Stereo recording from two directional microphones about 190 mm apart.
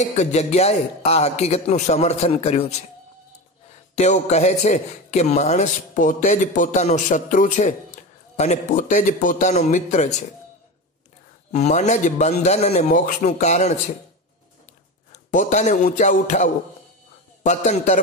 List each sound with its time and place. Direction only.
0.0 s a man's voice: 35° left (ahead or behind)
3.9 s a man's voice: 35° left (ahead or behind)
11.5 s a man's voice: 35° left (ahead or behind)
15.1 s a man's voice: 40° left (ahead or behind)